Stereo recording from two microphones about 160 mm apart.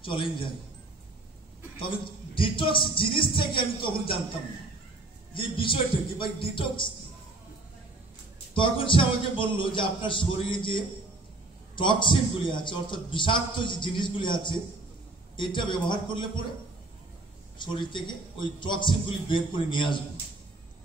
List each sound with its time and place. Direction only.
0.0 s a man's voice: 35° left (ahead or behind)
1.8 s a man's voice: 35° left (ahead or behind)
5.3 s a man's voice: 35° left (ahead or behind)
8.5 s a man's voice: 30° left (ahead or behind)
17.6 s a man's voice: 30° left (ahead or behind)